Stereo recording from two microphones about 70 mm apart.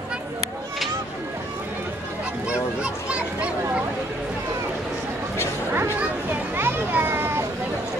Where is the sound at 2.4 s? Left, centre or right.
Centre.